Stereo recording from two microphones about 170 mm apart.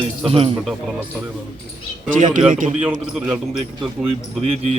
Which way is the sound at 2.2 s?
50° right (ahead or behind).